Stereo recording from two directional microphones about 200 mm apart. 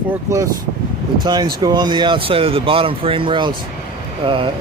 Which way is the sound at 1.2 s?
20° right (ahead or behind).